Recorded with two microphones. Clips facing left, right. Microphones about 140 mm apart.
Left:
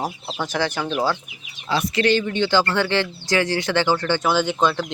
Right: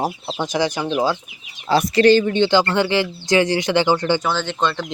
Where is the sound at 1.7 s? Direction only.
40° right (ahead or behind).